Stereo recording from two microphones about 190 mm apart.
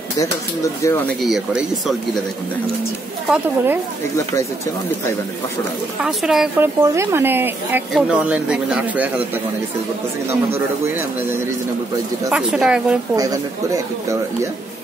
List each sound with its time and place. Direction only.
0.8 s speech: 15° left (ahead or behind)
1.2 s a man's voice: centre (ahead or behind)
3.3 s speech: 10° right (ahead or behind)
6.0 s a man's voice: 5° right (ahead or behind)
6.8 s a man's voice: 15° right (ahead or behind)
10.5 s speech: 15° right (ahead or behind)
12.3 s a man's voice: 5° right (ahead or behind)
13.1 s speech: 20° right (ahead or behind)